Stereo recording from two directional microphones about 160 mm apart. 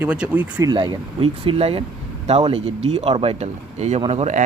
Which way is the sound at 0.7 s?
30° right (ahead or behind).